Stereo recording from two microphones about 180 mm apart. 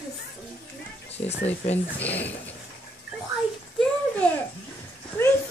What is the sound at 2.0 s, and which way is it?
Speech, 10° left (ahead or behind).